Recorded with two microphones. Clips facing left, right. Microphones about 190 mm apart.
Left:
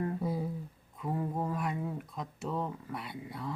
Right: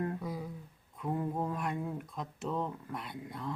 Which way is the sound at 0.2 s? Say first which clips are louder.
Left 5 dB; 30° left (ahead or behind).